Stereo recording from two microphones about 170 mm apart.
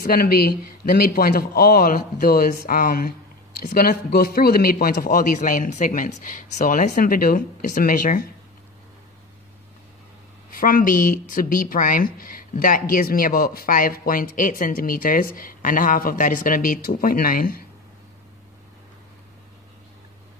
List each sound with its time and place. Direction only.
0.0 s a man's voice: 60° left (ahead or behind)
10.5 s speech: 55° left (ahead or behind)